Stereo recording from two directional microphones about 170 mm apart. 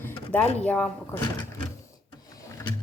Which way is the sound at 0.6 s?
5° left (ahead or behind).